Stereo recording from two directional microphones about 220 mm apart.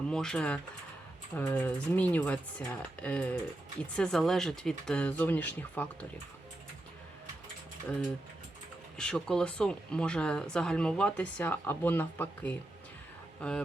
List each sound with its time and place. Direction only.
0.1 s speech: 5° left (ahead or behind)
9.0 s speech: 5° left (ahead or behind)